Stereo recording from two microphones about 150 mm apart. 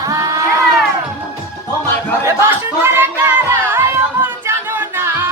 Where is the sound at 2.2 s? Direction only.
15° right (ahead or behind).